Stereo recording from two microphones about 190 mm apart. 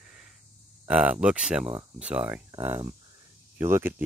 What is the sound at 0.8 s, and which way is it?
Speech, 5° right (ahead or behind).